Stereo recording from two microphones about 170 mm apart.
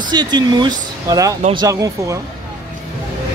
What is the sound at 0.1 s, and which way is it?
Speech, 25° right (ahead or behind).